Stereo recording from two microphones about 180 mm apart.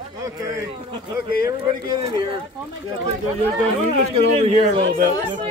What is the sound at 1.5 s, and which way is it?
Speech, 25° right (ahead or behind).